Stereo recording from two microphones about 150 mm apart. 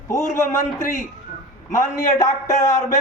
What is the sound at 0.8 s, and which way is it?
Speech, 60° left (ahead or behind).